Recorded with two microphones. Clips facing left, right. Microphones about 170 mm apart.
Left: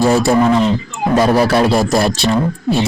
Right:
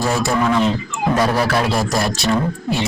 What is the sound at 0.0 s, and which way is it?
A man's voice, 30° left (ahead or behind).